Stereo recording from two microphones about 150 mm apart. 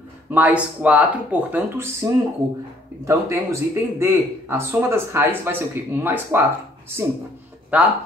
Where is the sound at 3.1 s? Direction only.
20° right (ahead or behind).